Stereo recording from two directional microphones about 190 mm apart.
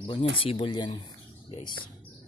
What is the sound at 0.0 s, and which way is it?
Speech, 30° left (ahead or behind).